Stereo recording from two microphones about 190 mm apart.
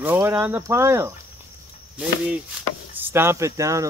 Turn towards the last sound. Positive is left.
turn(degrees=-15)  # may be behind; listen again after turning